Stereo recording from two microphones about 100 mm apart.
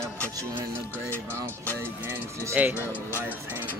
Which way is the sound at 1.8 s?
20° right (ahead or behind).